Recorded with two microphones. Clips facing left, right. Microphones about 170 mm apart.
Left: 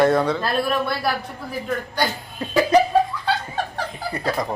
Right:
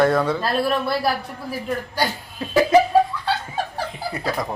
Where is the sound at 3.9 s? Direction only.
Centre (ahead or behind).